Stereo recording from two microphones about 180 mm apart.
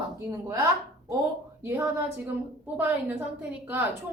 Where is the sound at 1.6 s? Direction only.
15° right (ahead or behind).